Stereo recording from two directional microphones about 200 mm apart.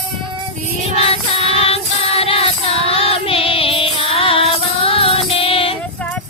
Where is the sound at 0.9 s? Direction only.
30° left (ahead or behind).